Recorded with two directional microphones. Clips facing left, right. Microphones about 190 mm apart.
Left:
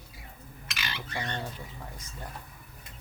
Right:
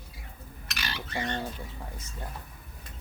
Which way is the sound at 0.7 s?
40° right (ahead or behind).